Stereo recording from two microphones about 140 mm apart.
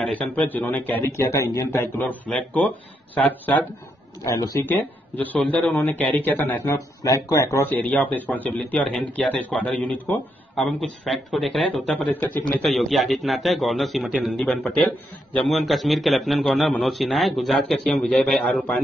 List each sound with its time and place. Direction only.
0.0 s speech: 10° left (ahead or behind)
4.2 s speech: 25° left (ahead or behind)
4.6 s a man's voice: 10° left (ahead or behind)